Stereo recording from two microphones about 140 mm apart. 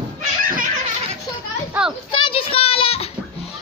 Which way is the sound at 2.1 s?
40° left (ahead or behind).